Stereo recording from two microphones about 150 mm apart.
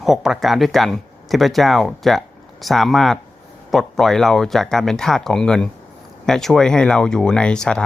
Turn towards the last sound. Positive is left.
turn(degrees=5)  # may be behind; listen again after turning